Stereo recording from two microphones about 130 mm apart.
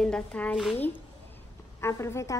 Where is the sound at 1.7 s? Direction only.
20° left (ahead or behind).